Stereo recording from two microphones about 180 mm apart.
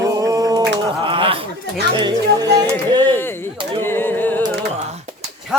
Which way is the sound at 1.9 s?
25° right (ahead or behind).